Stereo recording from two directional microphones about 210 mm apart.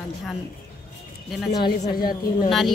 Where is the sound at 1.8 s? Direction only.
45° left (ahead or behind).